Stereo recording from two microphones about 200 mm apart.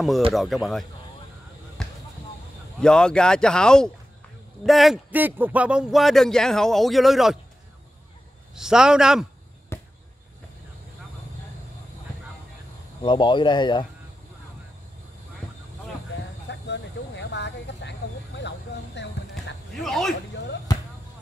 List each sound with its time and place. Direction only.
0.3 s a man's voice: centre (ahead or behind)
1.8 s basketball bounce: 5° left (ahead or behind)
2.8 s a man's voice: 5° left (ahead or behind)
8.5 s a man's voice: 5° right (ahead or behind)
9.7 s basketball bounce: 15° left (ahead or behind)
13.0 s speech: 25° left (ahead or behind)
16.4 s vehicle: 60° left (ahead or behind)
19.0 s a sound: 60° left (ahead or behind)
19.7 s speech: centre (ahead or behind)